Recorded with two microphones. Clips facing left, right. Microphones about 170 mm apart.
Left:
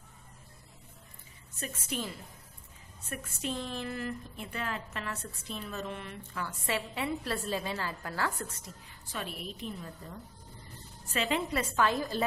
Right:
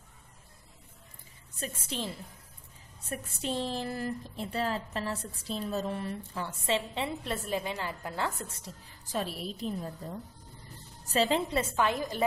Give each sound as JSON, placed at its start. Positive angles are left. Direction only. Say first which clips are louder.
{"t": 1.6, "sound": "a woman's voice", "louder": "even", "side_deg": -30}
{"t": 3.1, "sound": "a woman's voice", "louder": "right 2 dB", "side_deg": -35}
{"t": 8.6, "sound": "speech", "louder": "right 2 dB", "side_deg": -35}
{"t": 11.1, "sound": "speech", "louder": "right 4 dB", "side_deg": -35}
{"t": 11.7, "sound": "a woman's voice", "louder": "even", "side_deg": -20}